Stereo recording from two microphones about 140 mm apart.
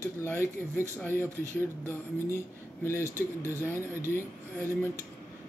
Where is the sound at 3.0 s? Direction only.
20° right (ahead or behind).